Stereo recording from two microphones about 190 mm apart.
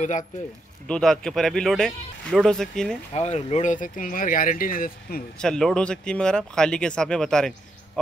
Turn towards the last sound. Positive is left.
turn(degrees=5)  # may be behind; listen again after turning